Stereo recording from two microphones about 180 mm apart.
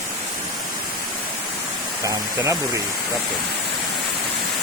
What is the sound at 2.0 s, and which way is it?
Speech, 15° right (ahead or behind).